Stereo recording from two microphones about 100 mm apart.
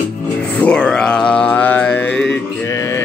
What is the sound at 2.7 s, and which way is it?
Mantra, 30° left (ahead or behind).